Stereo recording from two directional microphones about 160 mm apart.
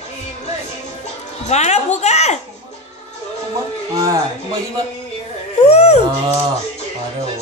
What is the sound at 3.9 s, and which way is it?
Speech, 20° right (ahead or behind).